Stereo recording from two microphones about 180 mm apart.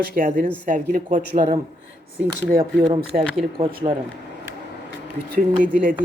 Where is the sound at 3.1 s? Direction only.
50° right (ahead or behind).